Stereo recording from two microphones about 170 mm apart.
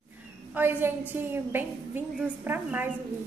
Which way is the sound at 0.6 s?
10° right (ahead or behind).